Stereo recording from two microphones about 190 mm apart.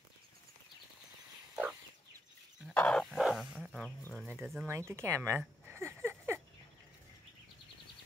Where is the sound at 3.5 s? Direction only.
5° right (ahead or behind).